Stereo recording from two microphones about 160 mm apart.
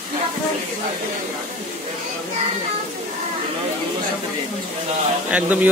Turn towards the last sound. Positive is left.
turn(degrees=-10)  # may be behind; listen again after turning